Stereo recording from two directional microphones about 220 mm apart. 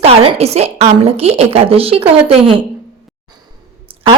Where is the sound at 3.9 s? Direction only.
25° right (ahead or behind).